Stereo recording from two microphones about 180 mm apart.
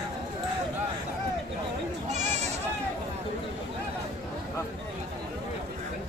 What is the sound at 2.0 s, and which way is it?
Sheep, 40° right (ahead or behind).